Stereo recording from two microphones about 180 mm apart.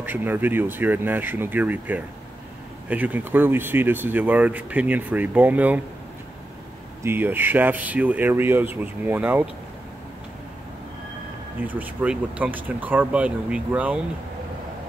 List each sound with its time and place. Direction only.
0.0 s speech: 10° right (ahead or behind)
7.0 s speech: 10° right (ahead or behind)
11.6 s speech: 10° right (ahead or behind)